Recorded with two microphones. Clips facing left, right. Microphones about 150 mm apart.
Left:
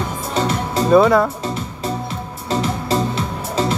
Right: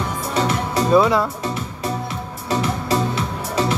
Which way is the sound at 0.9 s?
50° left (ahead or behind).